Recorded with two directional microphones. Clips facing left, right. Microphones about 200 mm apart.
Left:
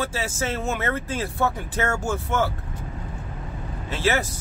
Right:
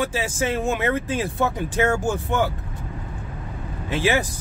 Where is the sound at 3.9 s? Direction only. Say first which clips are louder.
Right 2 dB; 15° right (ahead or behind).